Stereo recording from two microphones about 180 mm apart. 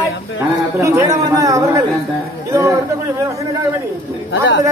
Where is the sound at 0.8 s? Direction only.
15° right (ahead or behind).